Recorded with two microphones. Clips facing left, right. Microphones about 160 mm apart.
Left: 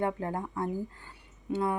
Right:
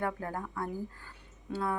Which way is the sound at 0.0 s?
20° left (ahead or behind).